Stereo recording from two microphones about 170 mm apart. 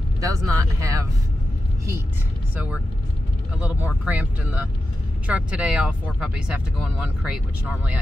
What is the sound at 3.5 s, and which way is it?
Speech, 10° right (ahead or behind).